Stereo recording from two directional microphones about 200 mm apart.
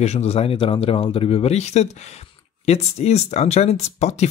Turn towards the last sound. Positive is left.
turn(degrees=35)  # may be behind; listen again after turning